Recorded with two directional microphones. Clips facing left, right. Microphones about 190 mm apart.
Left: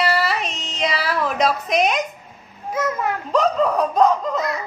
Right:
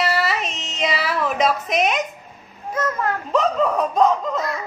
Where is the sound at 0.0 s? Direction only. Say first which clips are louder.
Left 1 dB; centre (ahead or behind).